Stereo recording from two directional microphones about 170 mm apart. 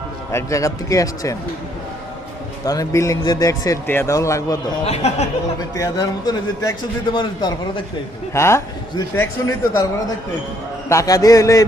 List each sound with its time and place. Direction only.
0.3 s a man's voice: 15° left (ahead or behind)
2.6 s a man's voice: 20° left (ahead or behind)
4.9 s speech: 40° left (ahead or behind)
5.7 s a man's voice: 20° left (ahead or behind)
10.8 s a man's voice: 20° left (ahead or behind)